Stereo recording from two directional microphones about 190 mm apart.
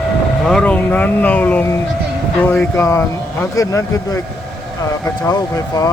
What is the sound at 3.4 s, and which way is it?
Speech, 15° left (ahead or behind).